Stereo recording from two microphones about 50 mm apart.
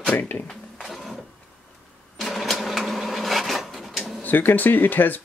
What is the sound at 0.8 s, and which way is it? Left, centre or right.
Printer, centre.